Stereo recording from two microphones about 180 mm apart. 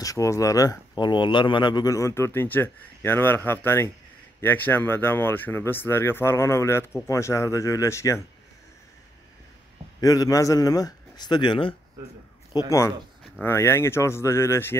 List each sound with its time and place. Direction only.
0.0 s speech: 20° left (ahead or behind)
9.9 s speech: 20° left (ahead or behind)
12.5 s speech: 15° left (ahead or behind)